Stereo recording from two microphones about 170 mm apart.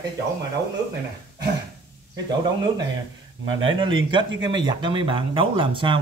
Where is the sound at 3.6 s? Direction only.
30° right (ahead or behind).